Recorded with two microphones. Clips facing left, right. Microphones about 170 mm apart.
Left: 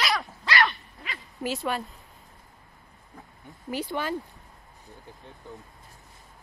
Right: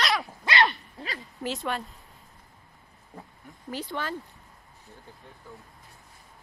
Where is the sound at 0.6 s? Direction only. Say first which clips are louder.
Right 2 dB; 35° right (ahead or behind).